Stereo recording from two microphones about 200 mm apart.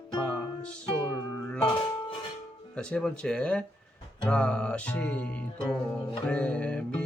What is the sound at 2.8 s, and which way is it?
Music, 5° left (ahead or behind).